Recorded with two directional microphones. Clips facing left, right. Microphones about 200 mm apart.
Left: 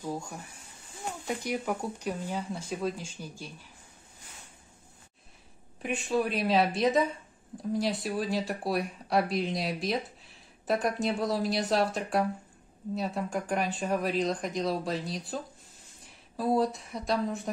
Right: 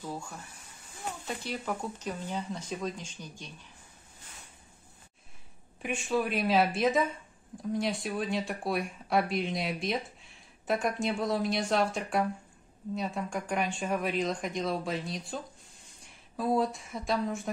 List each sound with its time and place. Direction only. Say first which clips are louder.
0.0 s speech: left 3 dB; 15° left (ahead or behind)
5.8 s a woman's voice: left 1 dB; centre (ahead or behind)